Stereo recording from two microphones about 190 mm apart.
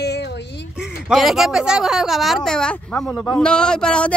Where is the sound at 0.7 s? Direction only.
Centre (ahead or behind).